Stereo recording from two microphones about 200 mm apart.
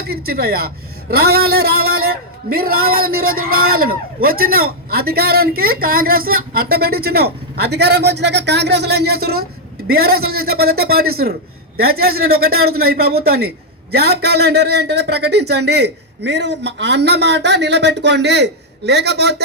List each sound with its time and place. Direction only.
0.0 s a man's voice: 50° right (ahead or behind)
3.2 s speech: 90° right
3.7 s a man's voice: 45° right (ahead or behind)
12.6 s a man's voice: 50° right (ahead or behind)